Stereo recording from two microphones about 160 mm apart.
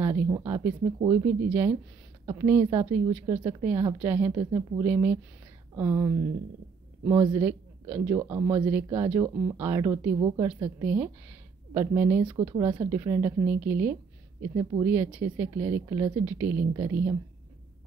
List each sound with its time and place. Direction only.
0.0 s a woman's voice: 15° right (ahead or behind)
14.5 s speech: 25° right (ahead or behind)
14.9 s a woman's voice: 10° right (ahead or behind)